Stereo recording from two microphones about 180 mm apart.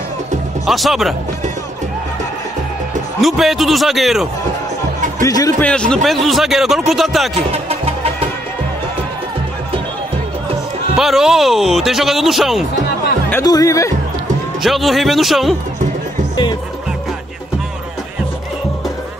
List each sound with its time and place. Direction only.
0.7 s a man's voice: centre (ahead or behind)
3.2 s a man's voice: centre (ahead or behind)
5.2 s speech: 20° left (ahead or behind)
5.6 s a man's voice: 5° left (ahead or behind)
7.5 s music: 35° right (ahead or behind)
11.0 s a man's voice: centre (ahead or behind)
13.3 s speech: 20° left (ahead or behind)
14.6 s a man's voice: centre (ahead or behind)